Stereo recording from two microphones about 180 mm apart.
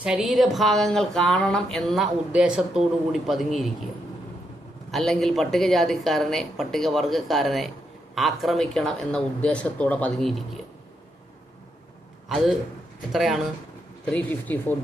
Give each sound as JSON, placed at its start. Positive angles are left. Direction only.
{"t": 0.0, "sound": "speech", "side_deg": -5}
{"t": 4.9, "sound": "speech", "side_deg": 0}
{"t": 12.3, "sound": "speech", "side_deg": 0}